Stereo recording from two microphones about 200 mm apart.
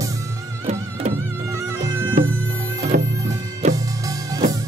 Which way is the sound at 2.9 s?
45° right (ahead or behind).